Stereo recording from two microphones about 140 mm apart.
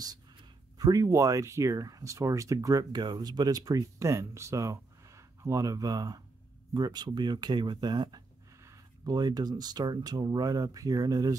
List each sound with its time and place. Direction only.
0.7 s speech: 25° right (ahead or behind)